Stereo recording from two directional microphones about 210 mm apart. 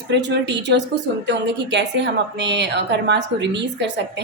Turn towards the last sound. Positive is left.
turn(degrees=-55)  # may be behind; listen again after turning